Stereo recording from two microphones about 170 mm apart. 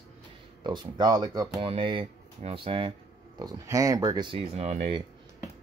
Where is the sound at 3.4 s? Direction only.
20° right (ahead or behind); by 5.0 s 35° right (ahead or behind).